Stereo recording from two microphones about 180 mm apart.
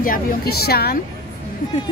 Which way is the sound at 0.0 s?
55° left (ahead or behind).